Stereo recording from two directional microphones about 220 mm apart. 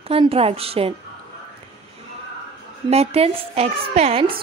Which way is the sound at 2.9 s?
30° right (ahead or behind).